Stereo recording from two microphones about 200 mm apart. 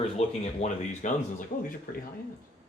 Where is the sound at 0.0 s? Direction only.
30° left (ahead or behind).